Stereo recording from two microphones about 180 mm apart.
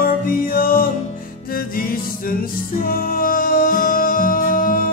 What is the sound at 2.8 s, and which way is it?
Music, 55° left (ahead or behind).